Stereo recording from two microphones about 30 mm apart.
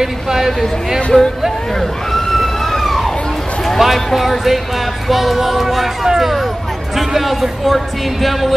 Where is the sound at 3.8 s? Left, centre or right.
Centre.